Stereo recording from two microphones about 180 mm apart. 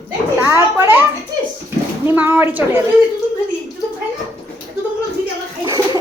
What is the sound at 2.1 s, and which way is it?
Speech, 10° right (ahead or behind).